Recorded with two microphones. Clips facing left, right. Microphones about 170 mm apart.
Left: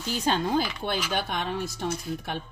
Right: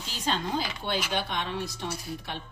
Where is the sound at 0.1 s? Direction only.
50° left (ahead or behind).